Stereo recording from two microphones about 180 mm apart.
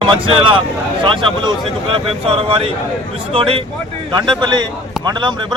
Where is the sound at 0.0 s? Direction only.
30° right (ahead or behind).